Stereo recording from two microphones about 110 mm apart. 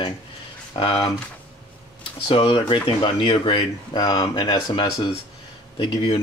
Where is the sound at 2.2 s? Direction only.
55° left (ahead or behind); by 4.7 s 35° left (ahead or behind).